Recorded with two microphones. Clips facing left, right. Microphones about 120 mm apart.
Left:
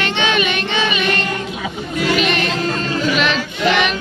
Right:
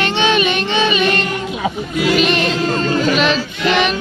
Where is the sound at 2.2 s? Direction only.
30° right (ahead or behind).